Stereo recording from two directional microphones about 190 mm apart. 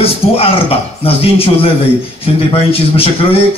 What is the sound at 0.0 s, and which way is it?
A man's voice, 30° left (ahead or behind).